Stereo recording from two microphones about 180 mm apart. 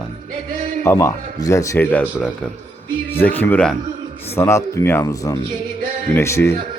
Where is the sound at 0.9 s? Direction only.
15° left (ahead or behind).